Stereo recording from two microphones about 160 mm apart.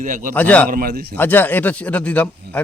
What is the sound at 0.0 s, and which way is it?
Speech, 55° right (ahead or behind).